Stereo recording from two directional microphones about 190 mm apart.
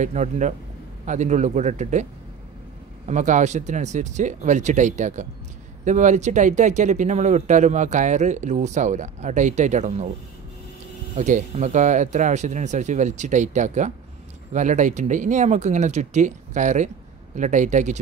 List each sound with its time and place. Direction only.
0.0 s speech: 40° right (ahead or behind)
3.1 s speech: 40° right (ahead or behind)
11.1 s speech: 40° right (ahead or behind)